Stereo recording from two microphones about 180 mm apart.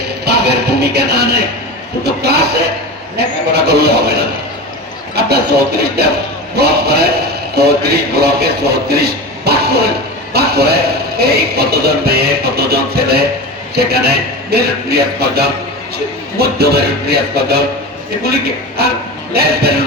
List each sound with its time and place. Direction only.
0.3 s a man's voice: 65° right (ahead or behind)
18.8 s a man's voice: 60° right (ahead or behind)